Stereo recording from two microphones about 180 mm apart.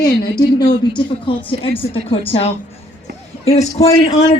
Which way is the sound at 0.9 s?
30° left (ahead or behind).